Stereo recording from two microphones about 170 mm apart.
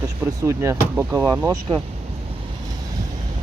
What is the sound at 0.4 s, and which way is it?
Speech, 15° right (ahead or behind).